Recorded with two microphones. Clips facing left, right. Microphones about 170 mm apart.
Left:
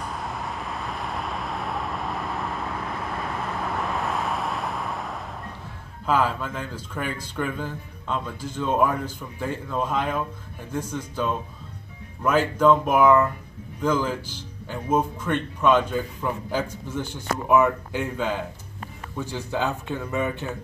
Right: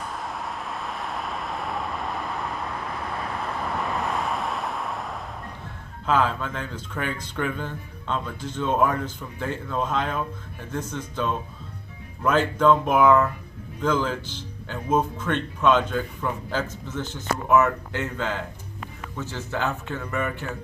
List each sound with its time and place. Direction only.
0.0 s vehicle: centre (ahead or behind)
6.0 s speech: 10° left (ahead or behind)